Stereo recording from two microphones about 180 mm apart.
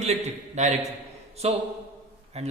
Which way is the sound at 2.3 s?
35° right (ahead or behind).